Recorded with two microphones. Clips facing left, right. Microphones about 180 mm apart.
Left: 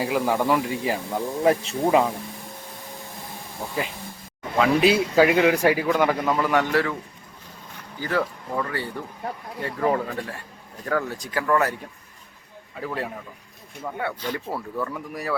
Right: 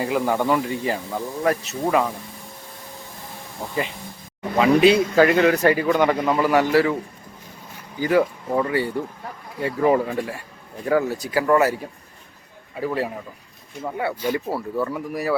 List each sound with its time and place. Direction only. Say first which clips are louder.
0.0 s a man's voice: right 1 dB; 5° left (ahead or behind)
1.5 s speech: left 2 dB; 20° left (ahead or behind)
4.5 s a man's voice: right 4 dB; centre (ahead or behind)
7.9 s speech: right 7 dB; 15° right (ahead or behind)
12.8 s a man's voice: right 5 dB; 5° right (ahead or behind)